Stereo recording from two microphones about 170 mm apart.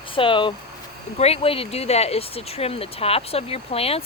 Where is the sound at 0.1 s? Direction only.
30° left (ahead or behind).